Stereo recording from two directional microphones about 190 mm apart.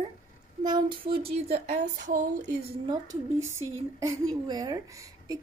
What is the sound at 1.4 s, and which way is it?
A woman's voice, 35° right (ahead or behind).